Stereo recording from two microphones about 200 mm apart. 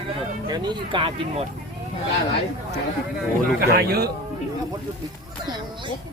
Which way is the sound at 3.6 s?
50° right (ahead or behind).